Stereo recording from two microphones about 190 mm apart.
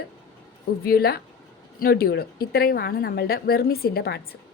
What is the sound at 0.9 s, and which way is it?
A woman's voice, 55° left (ahead or behind).